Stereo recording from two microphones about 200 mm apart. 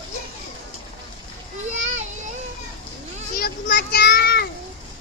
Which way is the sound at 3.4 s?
50° left (ahead or behind).